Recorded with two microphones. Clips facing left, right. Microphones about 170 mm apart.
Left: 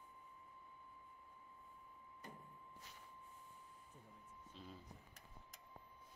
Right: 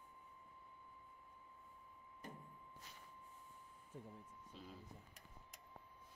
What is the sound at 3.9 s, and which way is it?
Speech, 75° right (ahead or behind).